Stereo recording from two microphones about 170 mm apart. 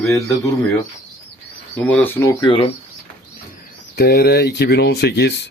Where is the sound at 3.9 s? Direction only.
75° left (ahead or behind).